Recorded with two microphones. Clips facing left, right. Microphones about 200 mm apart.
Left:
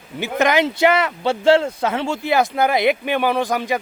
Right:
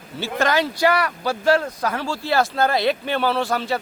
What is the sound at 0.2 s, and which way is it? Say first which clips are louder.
Speech: left 3 dB; 20° left (ahead or behind).